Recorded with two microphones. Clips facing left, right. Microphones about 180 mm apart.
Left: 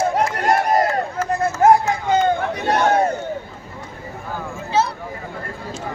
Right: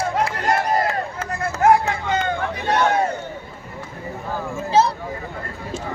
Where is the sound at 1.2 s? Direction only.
60° right (ahead or behind).